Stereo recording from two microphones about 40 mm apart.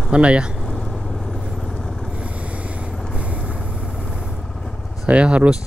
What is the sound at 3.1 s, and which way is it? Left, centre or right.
Vehicle, right.